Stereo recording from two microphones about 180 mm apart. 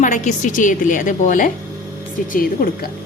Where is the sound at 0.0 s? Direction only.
45° left (ahead or behind).